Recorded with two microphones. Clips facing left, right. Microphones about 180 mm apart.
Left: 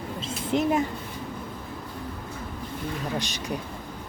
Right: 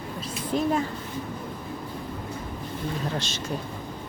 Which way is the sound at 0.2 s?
25° left (ahead or behind).